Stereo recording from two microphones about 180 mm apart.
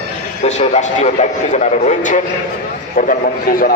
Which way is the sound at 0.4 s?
40° left (ahead or behind).